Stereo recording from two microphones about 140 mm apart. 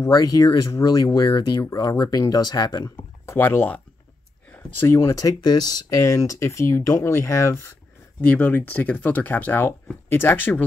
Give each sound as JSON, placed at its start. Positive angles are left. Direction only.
{"t": 0.0, "sound": "speech", "side_deg": 25}
{"t": 3.3, "sound": "speech", "side_deg": 15}